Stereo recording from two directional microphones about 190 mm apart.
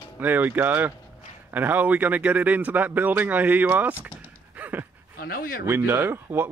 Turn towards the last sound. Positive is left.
turn(degrees=-10)  # may be behind; listen again after turning